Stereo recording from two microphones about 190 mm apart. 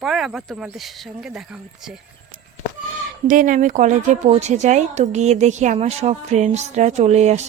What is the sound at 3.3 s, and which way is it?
A woman's voice, 45° right (ahead or behind).